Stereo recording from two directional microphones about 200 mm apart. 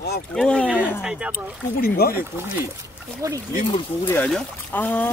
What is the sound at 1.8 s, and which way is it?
Speech, 50° left (ahead or behind).